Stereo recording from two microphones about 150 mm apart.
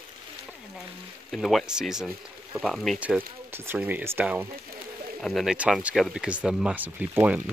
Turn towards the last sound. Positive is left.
turn(degrees=-10)  # may be behind; listen again after turning